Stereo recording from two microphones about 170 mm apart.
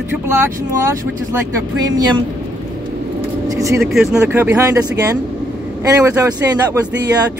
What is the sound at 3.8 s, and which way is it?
Speech, centre (ahead or behind).